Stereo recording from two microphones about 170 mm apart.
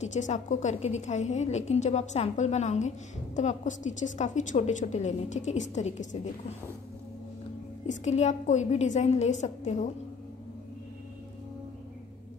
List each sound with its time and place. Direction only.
0.0 s a woman's voice: 45° left (ahead or behind)
7.8 s a woman's voice: 40° left (ahead or behind)